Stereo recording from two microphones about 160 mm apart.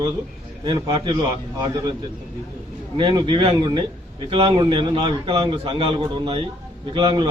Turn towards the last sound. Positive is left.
turn(degrees=-30)  # may be behind; listen again after turning